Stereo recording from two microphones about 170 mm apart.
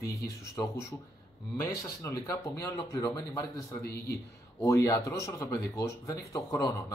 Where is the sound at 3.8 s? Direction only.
65° left (ahead or behind).